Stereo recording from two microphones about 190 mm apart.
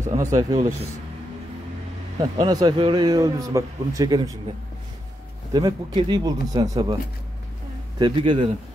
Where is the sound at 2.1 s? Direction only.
20° right (ahead or behind).